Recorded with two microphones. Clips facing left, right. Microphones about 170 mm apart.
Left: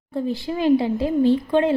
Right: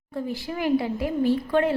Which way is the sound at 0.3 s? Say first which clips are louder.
Left 6 dB; 25° left (ahead or behind).